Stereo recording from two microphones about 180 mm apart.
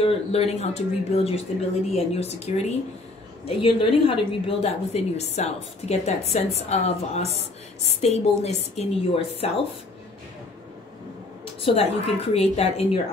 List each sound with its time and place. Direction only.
0.0 s a woman's voice: 35° left (ahead or behind)
11.6 s a woman's voice: 35° left (ahead or behind)